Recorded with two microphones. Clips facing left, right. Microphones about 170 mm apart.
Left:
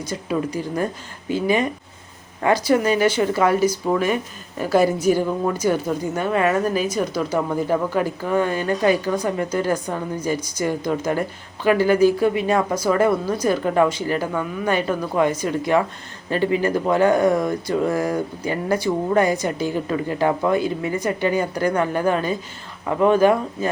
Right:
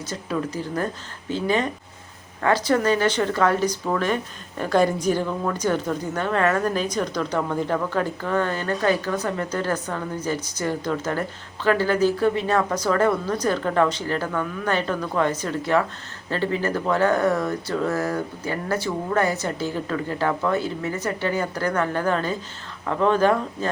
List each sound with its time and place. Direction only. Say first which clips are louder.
0.0 s speech: left 3 dB; 10° left (ahead or behind)